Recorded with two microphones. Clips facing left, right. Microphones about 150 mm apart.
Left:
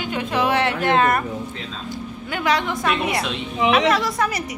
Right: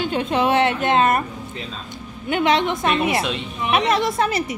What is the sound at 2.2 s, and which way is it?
A woman's voice, 25° right (ahead or behind).